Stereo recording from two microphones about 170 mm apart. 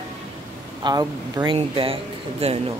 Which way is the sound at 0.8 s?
25° right (ahead or behind).